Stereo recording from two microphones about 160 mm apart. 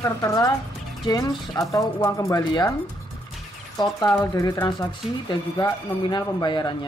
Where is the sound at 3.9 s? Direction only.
20° left (ahead or behind).